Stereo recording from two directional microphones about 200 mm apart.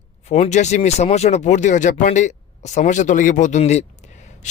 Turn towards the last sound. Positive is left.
turn(degrees=35)  # may be behind; listen again after turning